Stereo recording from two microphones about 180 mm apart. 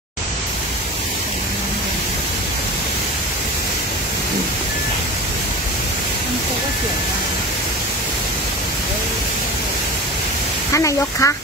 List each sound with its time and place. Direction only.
10.7 s speech: 15° left (ahead or behind)